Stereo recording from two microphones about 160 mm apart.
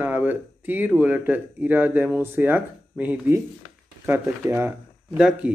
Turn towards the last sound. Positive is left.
turn(degrees=-5)  # may be behind; listen again after turning